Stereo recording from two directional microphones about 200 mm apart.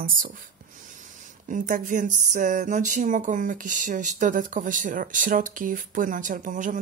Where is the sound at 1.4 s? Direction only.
40° right (ahead or behind).